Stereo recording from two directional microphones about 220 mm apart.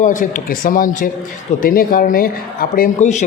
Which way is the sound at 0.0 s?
35° left (ahead or behind).